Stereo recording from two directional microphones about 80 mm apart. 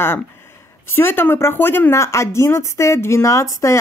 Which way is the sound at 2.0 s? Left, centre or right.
Left.